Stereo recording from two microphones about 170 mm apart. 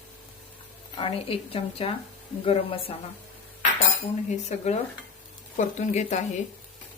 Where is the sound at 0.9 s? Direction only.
35° left (ahead or behind).